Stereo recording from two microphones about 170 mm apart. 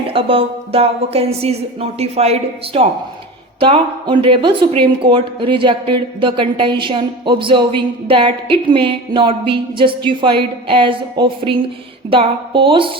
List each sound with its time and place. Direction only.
0.1 s a woman's voice: 30° right (ahead or behind)